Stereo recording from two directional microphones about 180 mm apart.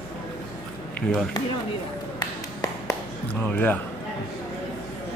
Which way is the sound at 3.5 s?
10° left (ahead or behind).